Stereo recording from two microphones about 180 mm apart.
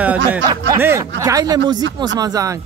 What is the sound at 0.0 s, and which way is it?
A man's voice, 10° right (ahead or behind).